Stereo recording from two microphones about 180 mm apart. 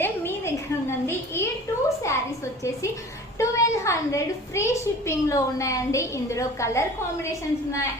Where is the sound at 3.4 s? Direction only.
15° left (ahead or behind).